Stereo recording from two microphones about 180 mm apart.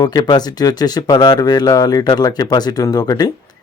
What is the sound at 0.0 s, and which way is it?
Speech, 20° left (ahead or behind).